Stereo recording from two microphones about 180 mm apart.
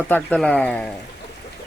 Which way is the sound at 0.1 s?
5° left (ahead or behind).